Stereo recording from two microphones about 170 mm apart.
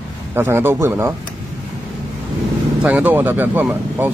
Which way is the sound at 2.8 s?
10° right (ahead or behind).